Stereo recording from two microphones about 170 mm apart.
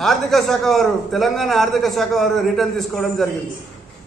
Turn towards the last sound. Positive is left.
turn(degrees=0)  # may be behind; listen again after turning